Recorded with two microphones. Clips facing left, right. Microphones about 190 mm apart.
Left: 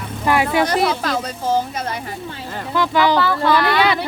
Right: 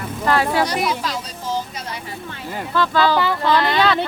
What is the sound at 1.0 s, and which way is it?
Speech, 55° left (ahead or behind).